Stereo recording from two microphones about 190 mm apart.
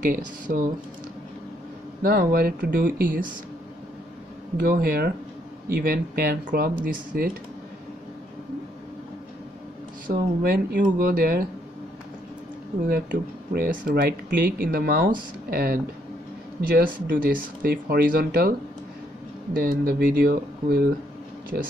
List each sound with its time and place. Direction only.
0.0 s speech: 45° right (ahead or behind)
2.0 s speech: 50° right (ahead or behind)
4.6 s speech: 50° right (ahead or behind)
10.0 s speech: 50° right (ahead or behind)
12.8 s speech: 50° right (ahead or behind)
19.5 s speech: 50° right (ahead or behind)